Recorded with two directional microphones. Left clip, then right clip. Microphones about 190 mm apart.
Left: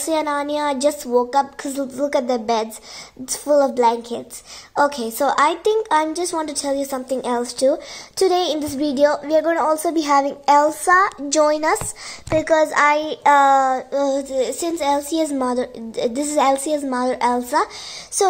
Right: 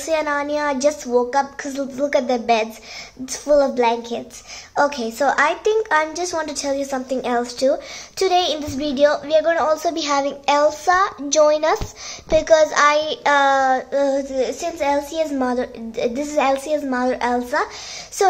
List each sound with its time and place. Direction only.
0.0 s a woman's voice: 25° left (ahead or behind)
12.3 s a woman's voice: 20° left (ahead or behind)
14.3 s a woman's voice: 35° left (ahead or behind)